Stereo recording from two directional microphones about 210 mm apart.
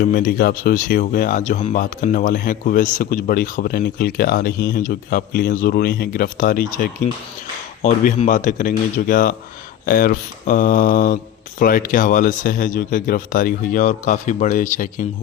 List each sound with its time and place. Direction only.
0.0 s speech: 40° left (ahead or behind)